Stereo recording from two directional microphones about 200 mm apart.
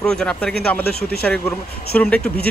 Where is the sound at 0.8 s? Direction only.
50° left (ahead or behind).